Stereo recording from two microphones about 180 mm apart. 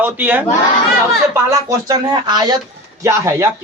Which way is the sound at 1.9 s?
20° right (ahead or behind).